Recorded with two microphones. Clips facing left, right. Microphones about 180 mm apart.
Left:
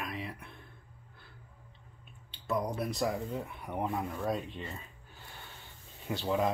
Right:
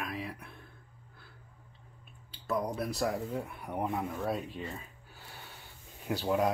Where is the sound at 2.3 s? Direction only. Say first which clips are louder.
Even; centre (ahead or behind).